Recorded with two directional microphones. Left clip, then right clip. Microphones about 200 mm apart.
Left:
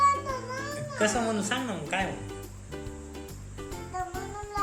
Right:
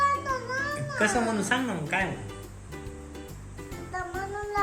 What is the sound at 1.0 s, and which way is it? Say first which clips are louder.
Speech: right 1 dB; 15° left (ahead or behind).